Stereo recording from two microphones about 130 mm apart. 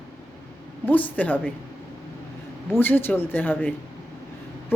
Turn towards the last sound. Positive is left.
turn(degrees=15)  # may be behind; listen again after turning